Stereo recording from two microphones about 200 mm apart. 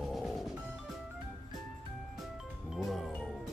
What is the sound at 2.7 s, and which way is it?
Music, centre (ahead or behind).